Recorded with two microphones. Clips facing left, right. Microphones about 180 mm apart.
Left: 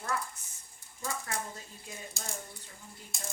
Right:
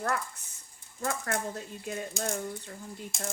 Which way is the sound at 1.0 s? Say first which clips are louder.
Right 6 dB; 55° right (ahead or behind).